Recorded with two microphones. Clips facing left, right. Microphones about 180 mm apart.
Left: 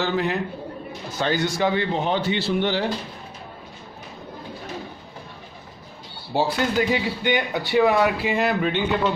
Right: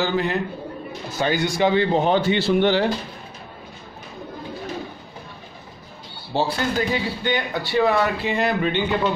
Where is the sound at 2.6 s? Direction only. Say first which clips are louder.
Right 5 dB; 65° right (ahead or behind).